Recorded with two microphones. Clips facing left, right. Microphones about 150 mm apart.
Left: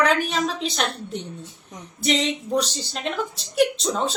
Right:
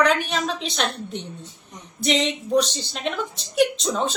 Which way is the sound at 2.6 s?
5° left (ahead or behind).